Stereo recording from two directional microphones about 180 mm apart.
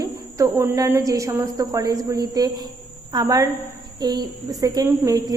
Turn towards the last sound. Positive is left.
turn(degrees=-20)  # may be behind; listen again after turning